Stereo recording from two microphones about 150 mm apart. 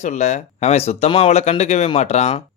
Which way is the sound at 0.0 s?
50° left (ahead or behind).